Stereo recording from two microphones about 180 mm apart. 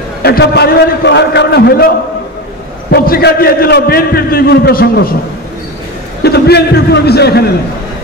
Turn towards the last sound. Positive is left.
turn(degrees=60)  # may be behind; listen again after turning